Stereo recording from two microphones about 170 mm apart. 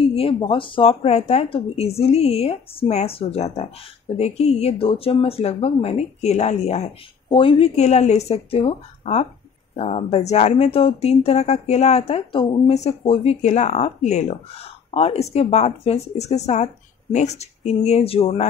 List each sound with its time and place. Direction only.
0.1 s speech: 35° left (ahead or behind)